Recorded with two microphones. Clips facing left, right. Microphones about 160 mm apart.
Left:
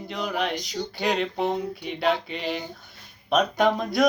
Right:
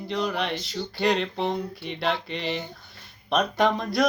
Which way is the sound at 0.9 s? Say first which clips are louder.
Right 1 dB; centre (ahead or behind).